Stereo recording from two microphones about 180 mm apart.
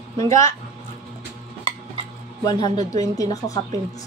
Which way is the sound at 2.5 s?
25° left (ahead or behind).